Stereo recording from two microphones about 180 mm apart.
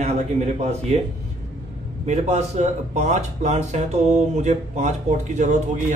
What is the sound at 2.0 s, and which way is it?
Speech, 40° right (ahead or behind).